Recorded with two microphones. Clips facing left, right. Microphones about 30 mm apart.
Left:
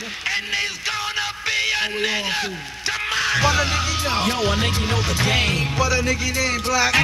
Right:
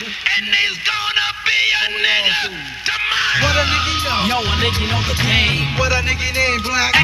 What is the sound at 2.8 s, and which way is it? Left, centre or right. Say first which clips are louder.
Music: right 4 dB; right.